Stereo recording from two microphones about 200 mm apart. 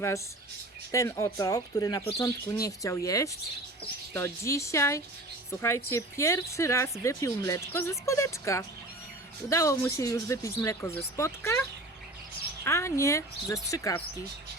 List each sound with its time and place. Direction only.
0.9 s speech: 15° left (ahead or behind)
12.6 s speech: 15° left (ahead or behind)